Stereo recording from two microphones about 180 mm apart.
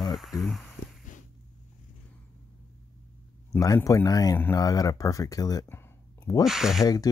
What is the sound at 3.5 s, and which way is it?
Speech, 20° left (ahead or behind).